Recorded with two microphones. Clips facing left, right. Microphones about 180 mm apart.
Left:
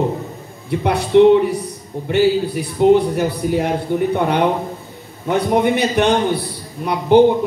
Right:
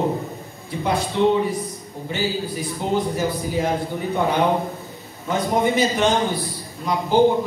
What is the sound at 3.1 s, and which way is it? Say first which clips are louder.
Speech: left 5 dB; 65° left (ahead or behind).